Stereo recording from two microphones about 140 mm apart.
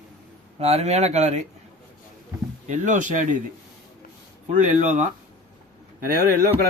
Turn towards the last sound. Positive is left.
turn(degrees=-90)